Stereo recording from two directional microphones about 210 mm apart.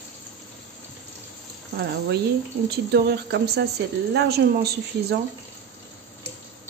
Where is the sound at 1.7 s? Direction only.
50° right (ahead or behind).